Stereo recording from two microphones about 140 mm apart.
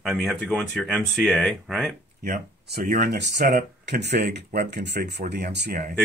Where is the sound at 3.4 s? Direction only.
90° right.